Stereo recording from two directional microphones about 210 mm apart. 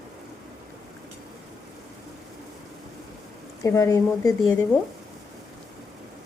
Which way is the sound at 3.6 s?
15° left (ahead or behind).